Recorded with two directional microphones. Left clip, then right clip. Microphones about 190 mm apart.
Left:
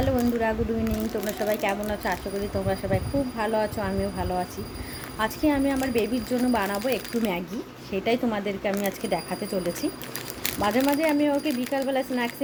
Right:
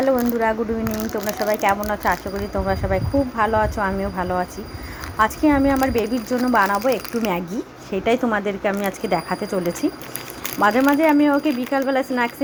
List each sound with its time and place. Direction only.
0.0 s speech: 20° right (ahead or behind)
10.6 s speech: 15° right (ahead or behind)